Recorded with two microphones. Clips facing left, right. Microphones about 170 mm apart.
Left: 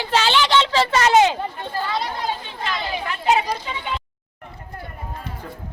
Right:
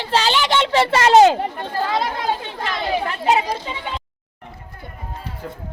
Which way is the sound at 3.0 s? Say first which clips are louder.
Left 2 dB; 30° right (ahead or behind).